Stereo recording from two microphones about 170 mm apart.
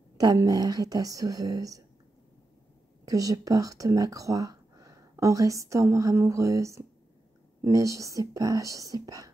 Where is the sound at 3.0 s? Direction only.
20° right (ahead or behind).